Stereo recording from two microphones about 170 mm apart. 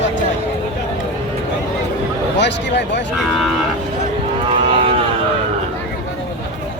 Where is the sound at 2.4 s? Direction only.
90° left.